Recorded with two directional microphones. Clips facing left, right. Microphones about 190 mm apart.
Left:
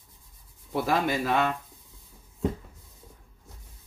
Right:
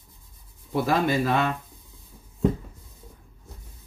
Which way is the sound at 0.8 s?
10° left (ahead or behind).